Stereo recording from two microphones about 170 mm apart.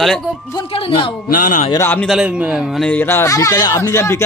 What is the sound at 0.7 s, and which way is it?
Speech, 35° left (ahead or behind).